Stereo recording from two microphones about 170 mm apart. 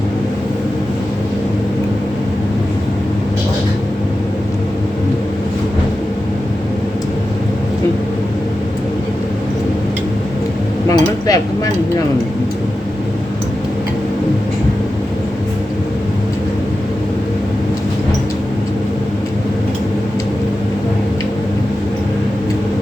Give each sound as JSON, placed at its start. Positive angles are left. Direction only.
{"t": 10.8, "sound": "dishes", "side_deg": 20}